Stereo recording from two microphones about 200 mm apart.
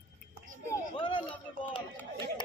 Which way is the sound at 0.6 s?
25° left (ahead or behind).